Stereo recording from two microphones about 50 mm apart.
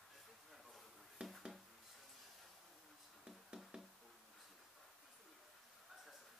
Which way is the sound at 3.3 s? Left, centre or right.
Centre.